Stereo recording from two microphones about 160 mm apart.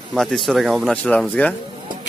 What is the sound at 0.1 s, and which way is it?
Speech, centre (ahead or behind).